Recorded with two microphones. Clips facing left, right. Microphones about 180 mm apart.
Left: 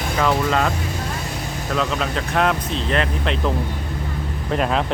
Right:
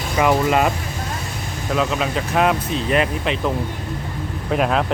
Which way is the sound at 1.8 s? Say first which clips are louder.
Right 2 dB; 5° right (ahead or behind).